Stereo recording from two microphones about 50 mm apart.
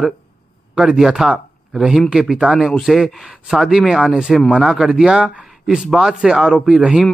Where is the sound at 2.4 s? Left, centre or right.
Right.